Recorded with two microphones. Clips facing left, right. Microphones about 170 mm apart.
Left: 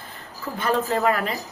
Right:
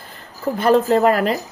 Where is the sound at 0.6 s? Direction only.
35° right (ahead or behind).